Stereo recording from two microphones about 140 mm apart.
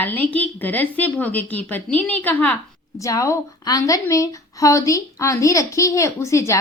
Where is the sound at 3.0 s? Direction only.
20° left (ahead or behind).